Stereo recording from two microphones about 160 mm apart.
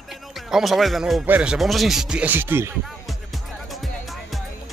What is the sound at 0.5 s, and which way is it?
Speech, centre (ahead or behind).